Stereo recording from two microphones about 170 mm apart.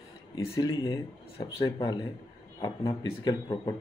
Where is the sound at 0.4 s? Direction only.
20° left (ahead or behind).